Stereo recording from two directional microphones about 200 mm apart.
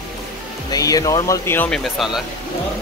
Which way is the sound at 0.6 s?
20° left (ahead or behind).